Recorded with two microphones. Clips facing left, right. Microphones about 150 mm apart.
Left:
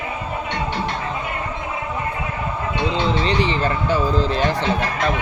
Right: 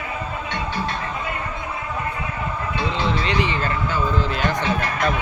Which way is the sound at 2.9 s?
35° left (ahead or behind).